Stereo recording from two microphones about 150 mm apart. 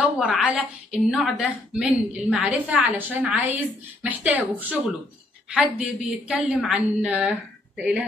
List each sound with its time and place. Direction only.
0.0 s a woman's voice: 5° right (ahead or behind)